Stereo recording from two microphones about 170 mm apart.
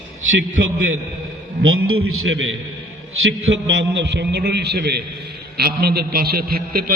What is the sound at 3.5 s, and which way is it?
A man's voice, 90° right.